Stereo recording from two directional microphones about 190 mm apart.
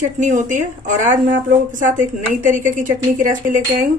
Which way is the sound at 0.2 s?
40° right (ahead or behind).